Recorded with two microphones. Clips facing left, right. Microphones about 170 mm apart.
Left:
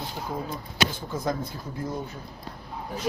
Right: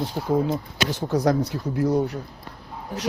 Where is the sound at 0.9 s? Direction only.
80° right.